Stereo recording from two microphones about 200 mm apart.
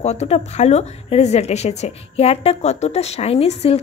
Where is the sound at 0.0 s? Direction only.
35° left (ahead or behind).